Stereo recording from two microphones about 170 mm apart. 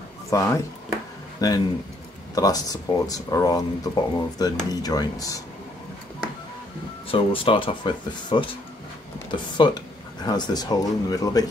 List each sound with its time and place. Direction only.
0.3 s speech: 20° left (ahead or behind)
7.1 s speech: 30° left (ahead or behind)
9.6 s speech: 30° left (ahead or behind)